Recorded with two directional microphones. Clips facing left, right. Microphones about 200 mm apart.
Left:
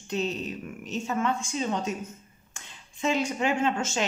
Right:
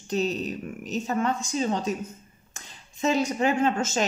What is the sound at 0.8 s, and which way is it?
A woman's voice, 40° right (ahead or behind).